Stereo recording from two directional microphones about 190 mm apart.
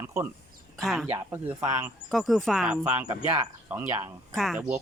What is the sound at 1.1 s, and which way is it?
Speech, 10° right (ahead or behind).